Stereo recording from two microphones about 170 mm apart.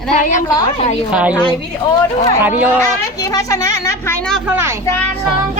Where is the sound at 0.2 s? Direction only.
50° left (ahead or behind).